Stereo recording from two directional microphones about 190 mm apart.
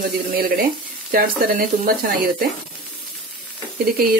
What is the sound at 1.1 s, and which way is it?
Speech, 50° right (ahead or behind).